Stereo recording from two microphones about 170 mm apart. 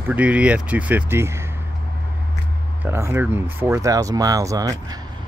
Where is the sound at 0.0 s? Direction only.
10° right (ahead or behind).